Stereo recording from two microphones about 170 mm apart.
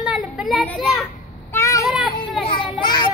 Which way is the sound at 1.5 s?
20° left (ahead or behind).